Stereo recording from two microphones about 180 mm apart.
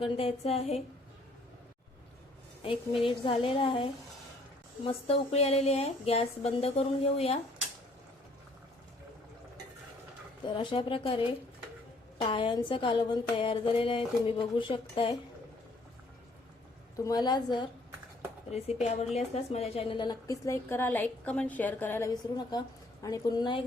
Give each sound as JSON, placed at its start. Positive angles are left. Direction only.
{"t": 0.0, "sound": "speech", "side_deg": 30}
{"t": 2.6, "sound": "a woman's voice", "side_deg": 30}
{"t": 10.4, "sound": "a woman's voice", "side_deg": 25}
{"t": 12.2, "sound": "a woman's voice", "side_deg": 25}
{"t": 17.0, "sound": "a woman's voice", "side_deg": 20}
{"t": 18.5, "sound": "a woman's voice", "side_deg": 35}